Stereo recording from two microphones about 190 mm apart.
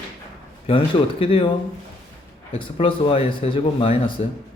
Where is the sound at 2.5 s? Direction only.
30° left (ahead or behind).